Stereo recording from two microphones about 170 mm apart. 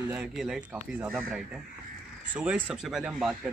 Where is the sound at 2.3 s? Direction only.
10° right (ahead or behind).